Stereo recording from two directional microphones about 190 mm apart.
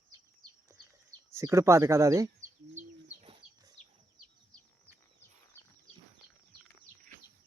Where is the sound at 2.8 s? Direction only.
35° right (ahead or behind).